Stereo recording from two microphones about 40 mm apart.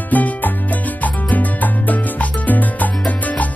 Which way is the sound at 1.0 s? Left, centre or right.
Left.